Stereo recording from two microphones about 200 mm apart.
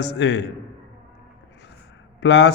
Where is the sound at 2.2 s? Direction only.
60° left (ahead or behind).